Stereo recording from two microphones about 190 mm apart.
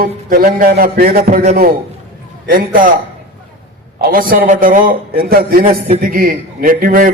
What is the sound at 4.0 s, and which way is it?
A man's voice, 50° right (ahead or behind).